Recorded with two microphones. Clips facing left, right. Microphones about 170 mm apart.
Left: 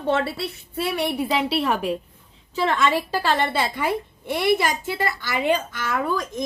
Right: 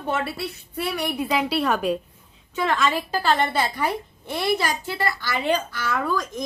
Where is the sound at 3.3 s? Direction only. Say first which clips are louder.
Right 2 dB; 30° left (ahead or behind).